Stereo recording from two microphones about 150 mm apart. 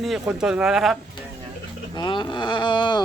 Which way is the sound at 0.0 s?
5° right (ahead or behind).